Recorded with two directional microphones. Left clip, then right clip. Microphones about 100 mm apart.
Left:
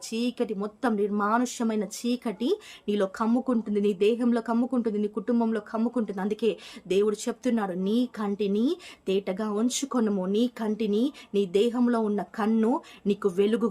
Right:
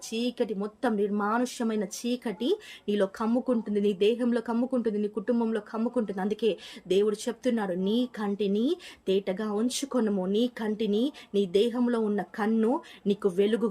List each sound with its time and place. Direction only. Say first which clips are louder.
0.1 s speech: even; 35° left (ahead or behind)